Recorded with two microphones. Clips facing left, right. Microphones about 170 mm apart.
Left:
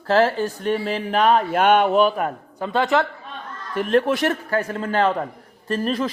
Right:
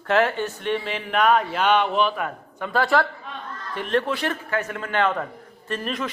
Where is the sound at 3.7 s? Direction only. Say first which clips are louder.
Left 5 dB; 45° left (ahead or behind).